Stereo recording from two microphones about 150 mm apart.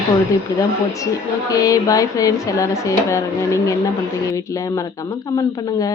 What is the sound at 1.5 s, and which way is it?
Speech, 25° left (ahead or behind).